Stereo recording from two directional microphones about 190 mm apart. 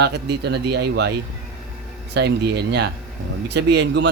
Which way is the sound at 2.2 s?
60° right (ahead or behind).